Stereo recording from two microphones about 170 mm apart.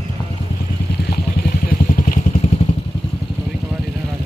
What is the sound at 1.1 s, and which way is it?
Vehicle, 60° left (ahead or behind).